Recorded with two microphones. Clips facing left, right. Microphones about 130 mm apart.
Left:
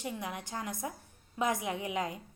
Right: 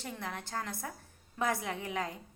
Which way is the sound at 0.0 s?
15° left (ahead or behind).